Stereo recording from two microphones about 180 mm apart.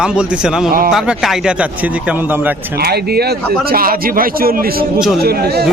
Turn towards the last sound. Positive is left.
turn(degrees=-60)  # may be behind; listen again after turning